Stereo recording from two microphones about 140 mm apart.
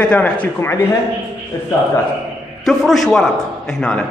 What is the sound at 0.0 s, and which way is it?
Speech, 10° left (ahead or behind).